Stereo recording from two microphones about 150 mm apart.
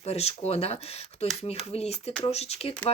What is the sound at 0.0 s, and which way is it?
Speech, 45° left (ahead or behind).